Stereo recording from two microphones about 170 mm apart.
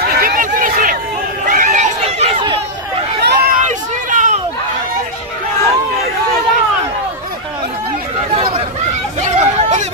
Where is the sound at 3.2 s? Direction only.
65° right (ahead or behind).